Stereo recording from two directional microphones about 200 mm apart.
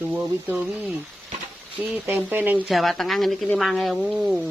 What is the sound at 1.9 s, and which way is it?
A man's voice, 5° right (ahead or behind).